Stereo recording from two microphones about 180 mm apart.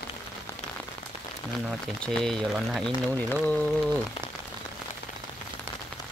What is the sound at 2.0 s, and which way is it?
Speech, 5° left (ahead or behind).